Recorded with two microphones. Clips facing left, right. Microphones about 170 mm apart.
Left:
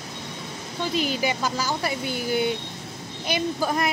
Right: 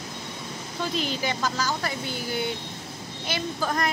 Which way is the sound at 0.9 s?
10° left (ahead or behind).